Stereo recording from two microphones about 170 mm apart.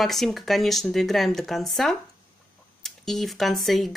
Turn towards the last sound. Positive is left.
turn(degrees=0)  # may be behind; listen again after turning